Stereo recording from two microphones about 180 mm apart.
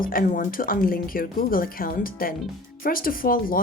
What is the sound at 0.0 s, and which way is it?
Speech, 50° left (ahead or behind).